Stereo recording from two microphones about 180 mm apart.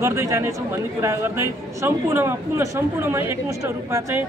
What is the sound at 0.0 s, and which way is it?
A man's voice, 15° right (ahead or behind).